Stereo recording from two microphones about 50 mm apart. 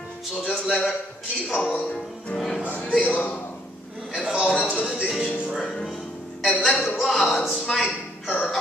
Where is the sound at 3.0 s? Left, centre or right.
Left.